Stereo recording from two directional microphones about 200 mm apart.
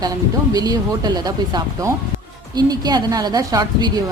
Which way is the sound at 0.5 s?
20° right (ahead or behind).